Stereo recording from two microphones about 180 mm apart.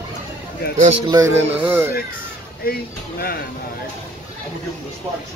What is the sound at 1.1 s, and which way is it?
Speech, 15° right (ahead or behind).